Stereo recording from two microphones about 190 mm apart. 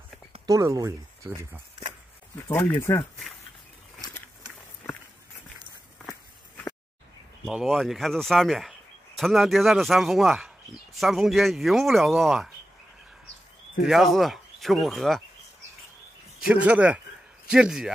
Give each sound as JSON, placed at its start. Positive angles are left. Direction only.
{"t": 0.5, "sound": "speech", "side_deg": -15}
{"t": 2.4, "sound": "speech", "side_deg": 15}
{"t": 7.4, "sound": "speech", "side_deg": 0}
{"t": 13.8, "sound": "speech", "side_deg": 0}
{"t": 16.3, "sound": "speech", "side_deg": -5}